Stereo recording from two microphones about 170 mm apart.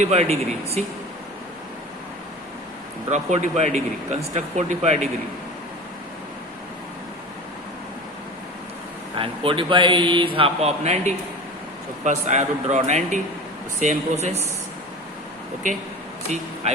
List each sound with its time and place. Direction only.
0.0 s a man's voice: 40° right (ahead or behind)
3.1 s speech: 45° right (ahead or behind)
9.1 s a man's voice: 30° right (ahead or behind)